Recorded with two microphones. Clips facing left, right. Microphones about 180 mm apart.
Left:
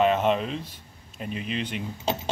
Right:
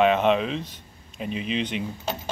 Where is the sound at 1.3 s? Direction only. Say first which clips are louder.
Right 3 dB; 50° left (ahead or behind).